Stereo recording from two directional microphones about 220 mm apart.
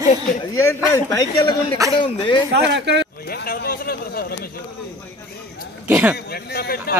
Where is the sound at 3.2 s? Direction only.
45° left (ahead or behind).